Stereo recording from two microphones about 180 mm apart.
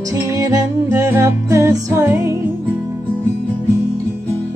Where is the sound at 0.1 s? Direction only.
20° right (ahead or behind).